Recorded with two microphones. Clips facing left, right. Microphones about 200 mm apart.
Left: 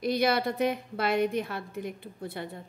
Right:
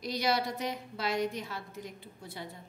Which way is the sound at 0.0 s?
55° left (ahead or behind).